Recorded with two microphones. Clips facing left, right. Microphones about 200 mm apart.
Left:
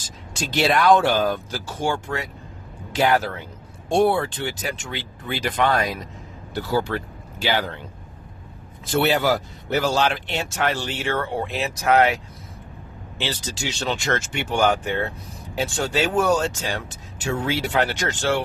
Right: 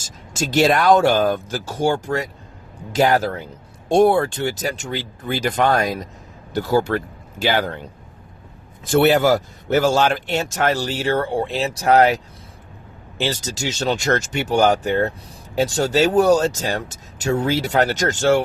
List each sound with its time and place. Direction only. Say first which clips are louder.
0.0 s speech: right 5 dB; 45° right (ahead or behind)
8.9 s speech: right 5 dB; 50° right (ahead or behind)